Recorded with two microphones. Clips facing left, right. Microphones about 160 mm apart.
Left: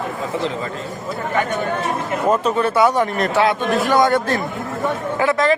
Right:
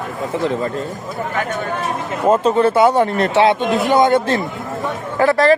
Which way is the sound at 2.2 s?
30° right (ahead or behind).